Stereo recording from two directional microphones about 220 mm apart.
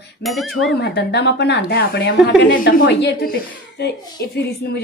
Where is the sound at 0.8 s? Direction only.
50° left (ahead or behind).